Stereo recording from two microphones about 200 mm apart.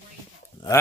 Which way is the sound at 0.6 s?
25° left (ahead or behind).